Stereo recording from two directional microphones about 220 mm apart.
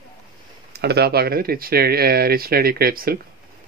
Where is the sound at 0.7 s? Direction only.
45° right (ahead or behind).